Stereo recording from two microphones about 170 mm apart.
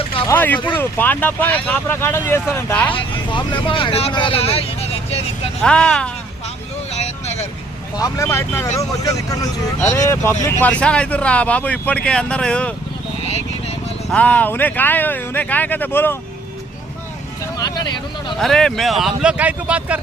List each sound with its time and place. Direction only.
0.3 s speech: 10° left (ahead or behind)
2.9 s speech: 30° left (ahead or behind)
5.6 s speech: 5° left (ahead or behind)
6.9 s vehicle: 40° left (ahead or behind)
7.9 s speech: 20° left (ahead or behind)
14.1 s speech: 10° left (ahead or behind)
18.3 s speech: 5° left (ahead or behind)